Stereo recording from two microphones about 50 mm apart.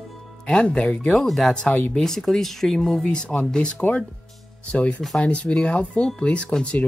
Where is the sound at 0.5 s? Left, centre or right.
Centre.